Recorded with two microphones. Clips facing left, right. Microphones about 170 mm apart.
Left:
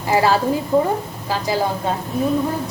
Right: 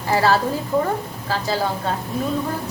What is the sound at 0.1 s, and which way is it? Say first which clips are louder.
A woman's voice: left 2 dB; 15° left (ahead or behind).